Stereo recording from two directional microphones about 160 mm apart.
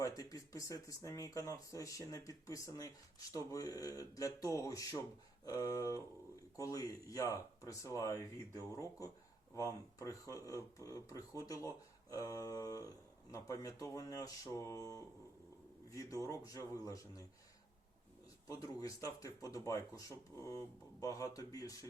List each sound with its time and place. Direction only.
0.0 s speech: 20° left (ahead or behind)
18.4 s speech: 20° left (ahead or behind)